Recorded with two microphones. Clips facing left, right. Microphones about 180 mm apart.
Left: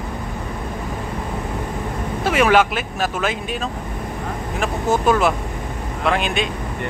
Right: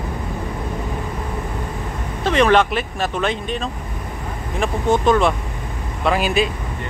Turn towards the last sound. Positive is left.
turn(degrees=-5)  # may be behind; listen again after turning